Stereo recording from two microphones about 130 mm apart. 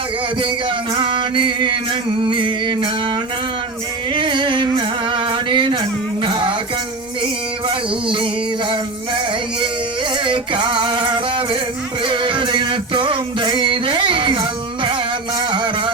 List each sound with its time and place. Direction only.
0.9 s music: 40° right (ahead or behind)
4.1 s music: 40° right (ahead or behind)
7.7 s music: 40° right (ahead or behind)
15.4 s a sound: 35° right (ahead or behind)